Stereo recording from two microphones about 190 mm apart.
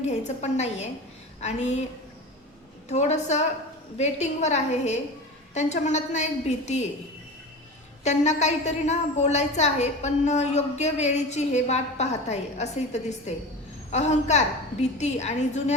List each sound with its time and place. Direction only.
0.0 s a woman's voice: 35° left (ahead or behind)
2.9 s a woman's voice: 35° left (ahead or behind)
8.0 s a woman's voice: 35° left (ahead or behind)